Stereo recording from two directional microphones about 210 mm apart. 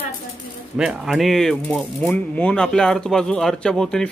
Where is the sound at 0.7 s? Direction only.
5° right (ahead or behind).